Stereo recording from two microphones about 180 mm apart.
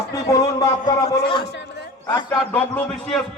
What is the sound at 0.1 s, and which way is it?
A man's voice, 20° left (ahead or behind).